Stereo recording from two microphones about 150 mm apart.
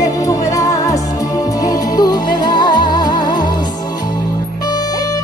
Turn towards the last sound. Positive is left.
turn(degrees=30)  # may be behind; listen again after turning